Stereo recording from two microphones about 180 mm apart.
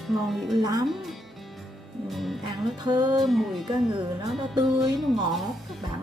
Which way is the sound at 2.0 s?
Centre (ahead or behind).